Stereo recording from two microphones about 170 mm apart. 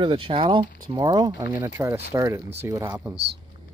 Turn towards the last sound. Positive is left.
turn(degrees=-15)  # may be behind; listen again after turning